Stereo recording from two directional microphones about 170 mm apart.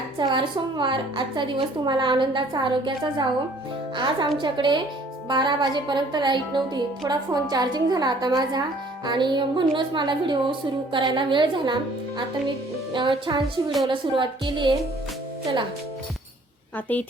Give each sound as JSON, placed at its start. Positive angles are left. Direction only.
{"t": 0.2, "sound": "a woman's voice", "side_deg": -30}
{"t": 16.7, "sound": "a woman's voice", "side_deg": 10}